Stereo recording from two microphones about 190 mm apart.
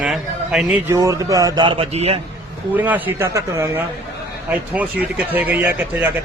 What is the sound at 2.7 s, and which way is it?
Speech, 10° right (ahead or behind).